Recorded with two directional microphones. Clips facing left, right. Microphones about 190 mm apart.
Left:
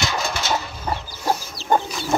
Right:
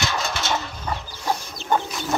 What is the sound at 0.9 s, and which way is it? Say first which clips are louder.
Chicken: left 3 dB; 30° left (ahead or behind).